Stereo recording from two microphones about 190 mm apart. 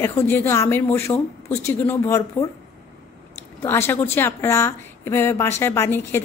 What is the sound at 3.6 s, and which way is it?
Speech, 10° left (ahead or behind).